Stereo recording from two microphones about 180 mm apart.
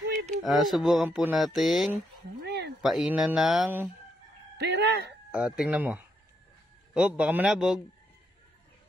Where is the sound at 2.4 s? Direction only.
65° right (ahead or behind).